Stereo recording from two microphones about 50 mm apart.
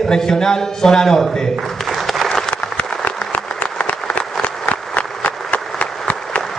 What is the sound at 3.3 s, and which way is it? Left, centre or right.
Applause, left.